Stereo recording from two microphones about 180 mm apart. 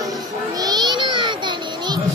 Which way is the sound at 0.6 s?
25° right (ahead or behind).